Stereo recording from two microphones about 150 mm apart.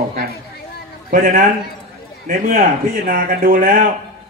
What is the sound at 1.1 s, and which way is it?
A man's voice, 65° right (ahead or behind).